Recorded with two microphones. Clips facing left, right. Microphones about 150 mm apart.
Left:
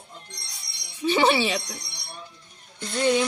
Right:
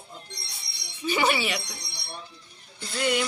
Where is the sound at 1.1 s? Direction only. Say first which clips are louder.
Left 4 dB; 25° left (ahead or behind).